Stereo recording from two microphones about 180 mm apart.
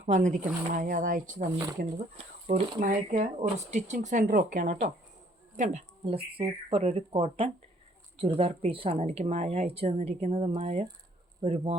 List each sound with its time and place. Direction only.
0.0 s speech: 40° right (ahead or behind)
2.5 s speech: 45° right (ahead or behind)